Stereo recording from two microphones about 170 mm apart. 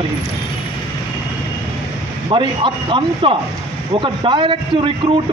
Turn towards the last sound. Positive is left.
turn(degrees=-30)  # may be behind; listen again after turning